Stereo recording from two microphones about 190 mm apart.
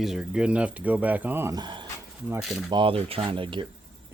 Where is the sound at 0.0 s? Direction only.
5° right (ahead or behind); by 3.7 s 25° right (ahead or behind).